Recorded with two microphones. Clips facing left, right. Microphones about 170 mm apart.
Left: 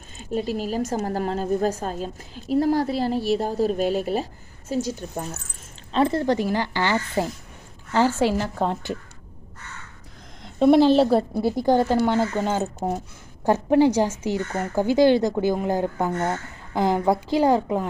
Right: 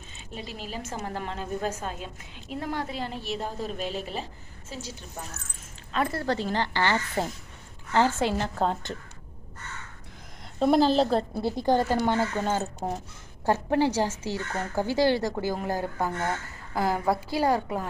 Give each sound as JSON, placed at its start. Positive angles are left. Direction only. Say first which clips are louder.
{"t": 0.2, "sound": "a woman's voice", "louder": "left 13 dB", "side_deg": 45}
{"t": 5.9, "sound": "a woman's voice", "louder": "left 7 dB", "side_deg": 25}
{"t": 7.9, "sound": "a woman's voice", "louder": "left 4 dB", "side_deg": -15}
{"t": 8.5, "sound": "a woman's voice", "louder": "left 2 dB", "side_deg": 5}
{"t": 10.4, "sound": "a sound", "louder": "left 6 dB", "side_deg": 0}
{"t": 10.9, "sound": "a woman's voice", "louder": "left 5 dB", "side_deg": 5}